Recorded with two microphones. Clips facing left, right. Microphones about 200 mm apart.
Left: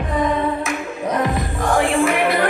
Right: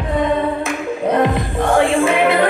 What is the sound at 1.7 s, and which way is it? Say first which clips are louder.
Music: right 3 dB; 25° right (ahead or behind).